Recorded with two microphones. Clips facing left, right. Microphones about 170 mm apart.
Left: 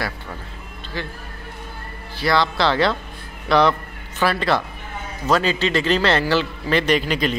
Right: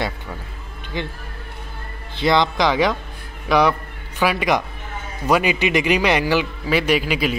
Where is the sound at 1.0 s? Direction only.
20° right (ahead or behind).